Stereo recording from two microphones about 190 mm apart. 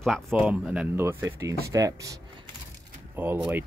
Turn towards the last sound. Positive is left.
turn(degrees=-10)  # may be behind; listen again after turning